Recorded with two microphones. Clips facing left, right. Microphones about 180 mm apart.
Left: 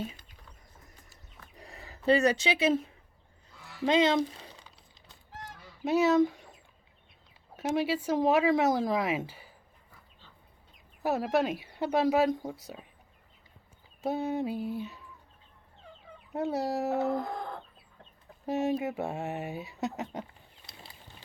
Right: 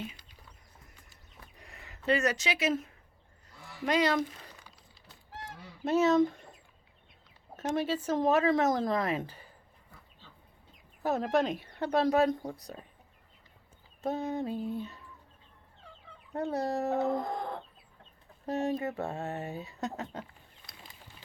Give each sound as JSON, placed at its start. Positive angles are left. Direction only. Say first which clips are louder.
{"t": 1.5, "sound": "speech", "louder": "left 8 dB", "side_deg": 35}
{"t": 5.8, "sound": "speech", "louder": "left 1 dB", "side_deg": 0}
{"t": 7.5, "sound": "speech", "louder": "left 2 dB", "side_deg": 10}
{"t": 11.0, "sound": "speech", "louder": "left 1 dB", "side_deg": 5}
{"t": 14.1, "sound": "speech", "louder": "left 2 dB", "side_deg": 5}
{"t": 16.3, "sound": "speech", "louder": "left 1 dB", "side_deg": 5}
{"t": 18.4, "sound": "speech", "louder": "left 2 dB", "side_deg": 5}